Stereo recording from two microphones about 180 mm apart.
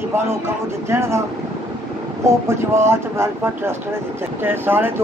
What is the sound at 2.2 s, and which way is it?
Speech, 15° right (ahead or behind).